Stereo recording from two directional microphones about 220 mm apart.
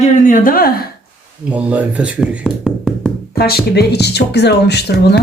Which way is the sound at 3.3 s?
45° left (ahead or behind).